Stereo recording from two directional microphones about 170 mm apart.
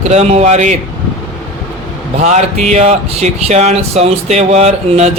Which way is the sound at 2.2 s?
40° right (ahead or behind).